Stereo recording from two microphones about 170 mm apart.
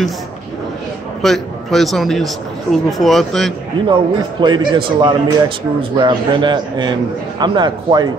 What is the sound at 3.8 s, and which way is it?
A man's voice, 30° right (ahead or behind).